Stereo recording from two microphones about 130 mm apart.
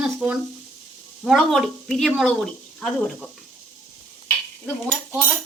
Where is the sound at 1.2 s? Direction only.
Centre (ahead or behind).